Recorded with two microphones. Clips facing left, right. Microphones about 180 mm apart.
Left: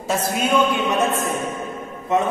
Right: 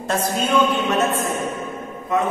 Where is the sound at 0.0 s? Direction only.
10° left (ahead or behind).